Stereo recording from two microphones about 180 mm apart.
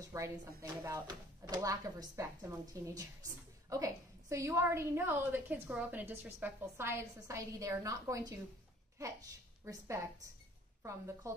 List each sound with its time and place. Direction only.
0.0 s a woman's voice: 15° right (ahead or behind)